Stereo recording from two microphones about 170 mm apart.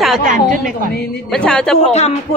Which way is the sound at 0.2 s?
50° right (ahead or behind).